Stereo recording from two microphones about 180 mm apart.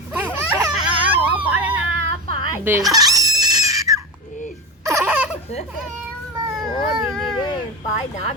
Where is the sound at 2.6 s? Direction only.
15° right (ahead or behind).